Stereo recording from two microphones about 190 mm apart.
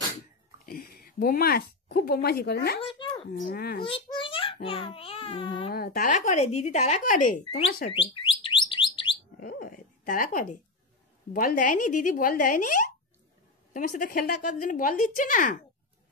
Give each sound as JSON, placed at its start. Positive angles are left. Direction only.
{"t": 0.7, "sound": "speech", "side_deg": 50}
{"t": 2.9, "sound": "a sound", "side_deg": 25}
{"t": 3.4, "sound": "speech", "side_deg": 50}
{"t": 3.8, "sound": "a sound", "side_deg": 25}
{"t": 4.6, "sound": "a child's voice", "side_deg": 30}
{"t": 5.7, "sound": "speech", "side_deg": 50}
{"t": 7.9, "sound": "bird", "side_deg": 25}
{"t": 9.4, "sound": "dog", "side_deg": 50}
{"t": 11.3, "sound": "speech", "side_deg": 45}